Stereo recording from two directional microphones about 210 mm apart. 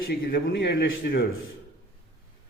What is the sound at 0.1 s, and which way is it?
A man's voice, 50° left (ahead or behind).